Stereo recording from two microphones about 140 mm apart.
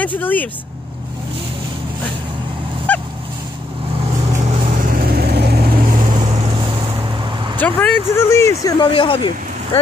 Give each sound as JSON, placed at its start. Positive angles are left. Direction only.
{"t": 0.0, "sound": "speech", "side_deg": 10}
{"t": 2.9, "sound": "goose", "side_deg": 10}
{"t": 4.8, "sound": "vehicle", "side_deg": -90}
{"t": 6.1, "sound": "vehicle", "side_deg": -35}
{"t": 7.5, "sound": "speech", "side_deg": 10}
{"t": 8.7, "sound": "speech", "side_deg": 35}